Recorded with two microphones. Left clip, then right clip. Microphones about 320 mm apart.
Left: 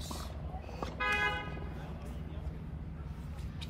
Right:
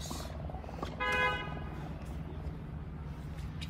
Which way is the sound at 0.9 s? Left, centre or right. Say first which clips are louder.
Right 1 dB; right.